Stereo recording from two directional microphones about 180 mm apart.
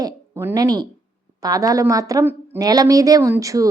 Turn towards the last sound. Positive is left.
turn(degrees=-20)  # may be behind; listen again after turning